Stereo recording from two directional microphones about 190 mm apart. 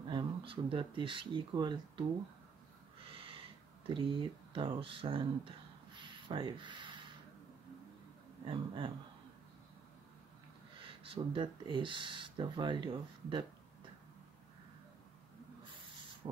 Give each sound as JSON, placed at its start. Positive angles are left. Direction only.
{"t": 0.1, "sound": "speech", "side_deg": -25}
{"t": 3.0, "sound": "a sound", "side_deg": -30}
{"t": 3.9, "sound": "speech", "side_deg": -25}
{"t": 5.9, "sound": "a sound", "side_deg": -25}
{"t": 8.5, "sound": "speech", "side_deg": -25}
{"t": 10.8, "sound": "speech", "side_deg": -25}
{"t": 15.6, "sound": "owl", "side_deg": -25}